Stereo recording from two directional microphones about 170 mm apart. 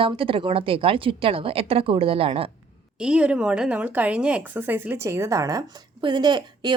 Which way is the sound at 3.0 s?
5° right (ahead or behind).